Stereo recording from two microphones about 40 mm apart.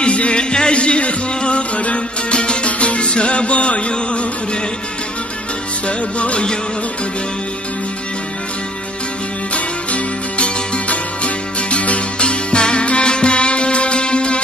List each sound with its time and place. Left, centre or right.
0.0 s music: left
5.9 s music: left
9.5 s music: left